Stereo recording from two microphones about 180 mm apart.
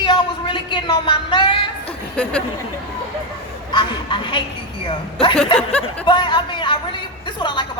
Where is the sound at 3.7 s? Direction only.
25° left (ahead or behind).